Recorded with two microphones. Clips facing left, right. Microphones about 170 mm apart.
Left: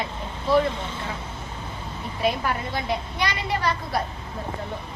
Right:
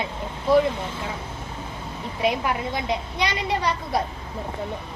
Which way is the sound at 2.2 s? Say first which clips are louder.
Right 1 dB; 20° right (ahead or behind).